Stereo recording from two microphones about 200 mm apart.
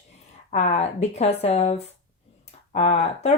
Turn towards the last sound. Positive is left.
turn(degrees=35)  # may be behind; listen again after turning